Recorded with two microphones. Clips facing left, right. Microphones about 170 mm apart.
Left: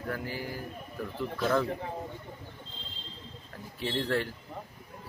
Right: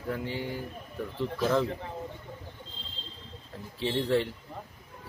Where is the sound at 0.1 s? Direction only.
25° right (ahead or behind).